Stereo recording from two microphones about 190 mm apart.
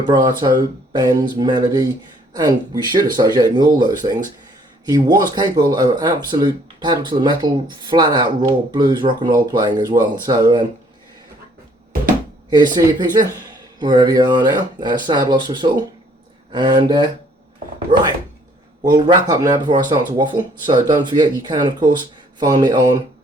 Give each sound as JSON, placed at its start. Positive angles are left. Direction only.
{"t": 0.1, "sound": "speech", "side_deg": -20}
{"t": 12.5, "sound": "speech", "side_deg": -20}
{"t": 19.3, "sound": "speech", "side_deg": -20}